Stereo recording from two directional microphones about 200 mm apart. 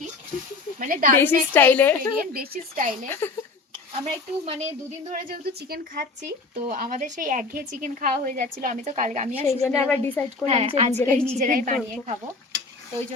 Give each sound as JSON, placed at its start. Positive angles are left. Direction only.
{"t": 0.8, "sound": "speech", "side_deg": -40}
{"t": 1.1, "sound": "a woman's voice", "side_deg": 10}
{"t": 2.3, "sound": "speech", "side_deg": -50}
{"t": 3.1, "sound": "a woman's voice", "side_deg": 10}
{"t": 4.0, "sound": "speech", "side_deg": -20}
{"t": 4.6, "sound": "a woman's voice", "side_deg": -40}
{"t": 9.6, "sound": "a woman's voice", "side_deg": 10}
{"t": 10.4, "sound": "a woman's voice", "side_deg": -30}
{"t": 10.9, "sound": "a woman's voice", "side_deg": 5}
{"t": 11.3, "sound": "a woman's voice", "side_deg": -40}